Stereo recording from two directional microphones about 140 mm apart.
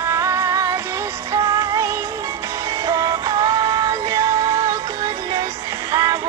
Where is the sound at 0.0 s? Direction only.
20° right (ahead or behind).